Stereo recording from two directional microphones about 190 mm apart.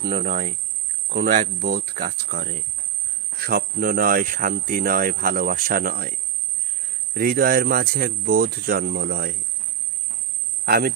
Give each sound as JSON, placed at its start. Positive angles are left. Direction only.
{"t": 0.0, "sound": "speech", "side_deg": -50}
{"t": 10.7, "sound": "speech", "side_deg": -50}